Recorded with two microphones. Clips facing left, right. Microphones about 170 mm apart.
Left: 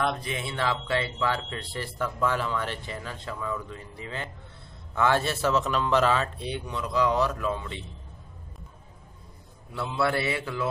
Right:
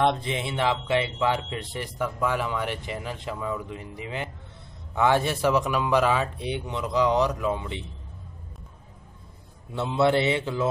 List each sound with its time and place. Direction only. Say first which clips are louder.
0.0 s speech: right 5 dB; 25° right (ahead or behind)
9.7 s mantra: right 5 dB; 20° right (ahead or behind)